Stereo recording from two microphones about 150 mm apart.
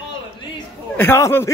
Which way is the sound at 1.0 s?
15° left (ahead or behind).